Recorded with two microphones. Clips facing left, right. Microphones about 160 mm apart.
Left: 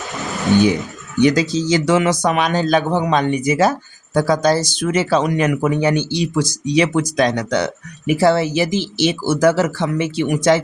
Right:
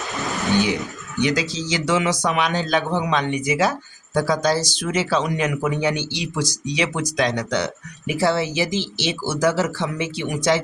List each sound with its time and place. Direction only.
1.2 s speech: 50° left (ahead or behind)